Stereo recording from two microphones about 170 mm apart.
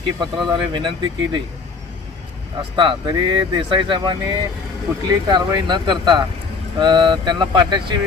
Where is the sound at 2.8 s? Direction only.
30° right (ahead or behind).